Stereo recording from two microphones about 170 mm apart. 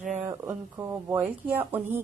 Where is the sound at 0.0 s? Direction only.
45° right (ahead or behind).